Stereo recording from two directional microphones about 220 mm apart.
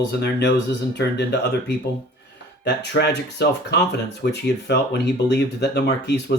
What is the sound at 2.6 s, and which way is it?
Speech, 50° left (ahead or behind).